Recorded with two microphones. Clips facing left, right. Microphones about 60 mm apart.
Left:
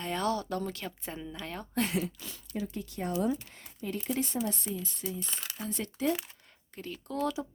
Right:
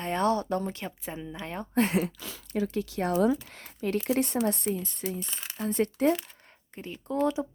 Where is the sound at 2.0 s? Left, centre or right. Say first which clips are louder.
Right 5 dB; right.